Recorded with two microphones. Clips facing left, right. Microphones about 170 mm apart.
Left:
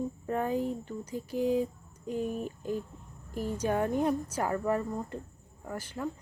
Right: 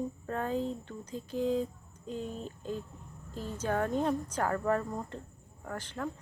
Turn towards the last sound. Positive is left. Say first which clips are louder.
# left 1 dB
turn(degrees=10)  # may be behind; listen again after turning